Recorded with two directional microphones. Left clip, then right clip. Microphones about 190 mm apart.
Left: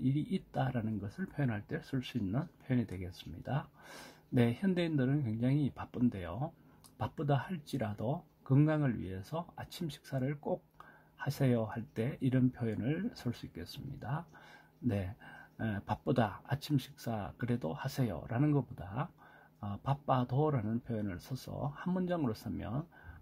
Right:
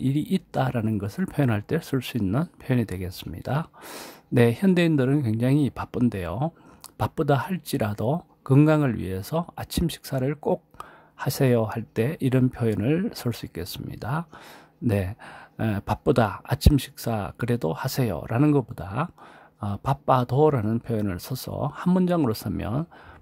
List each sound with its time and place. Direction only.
0.0 s speech: 35° right (ahead or behind)